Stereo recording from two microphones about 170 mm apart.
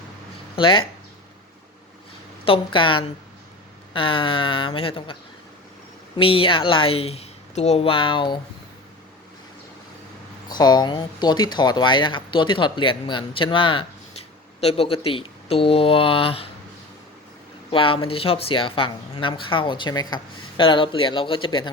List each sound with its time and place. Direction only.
0.5 s speech: 30° left (ahead or behind)
2.4 s speech: 30° left (ahead or behind)
6.1 s speech: 30° left (ahead or behind)
10.6 s speech: 25° left (ahead or behind)
17.7 s speech: 30° left (ahead or behind)